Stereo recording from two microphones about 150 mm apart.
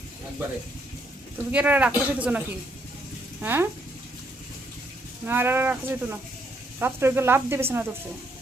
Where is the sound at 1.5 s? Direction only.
10° right (ahead or behind).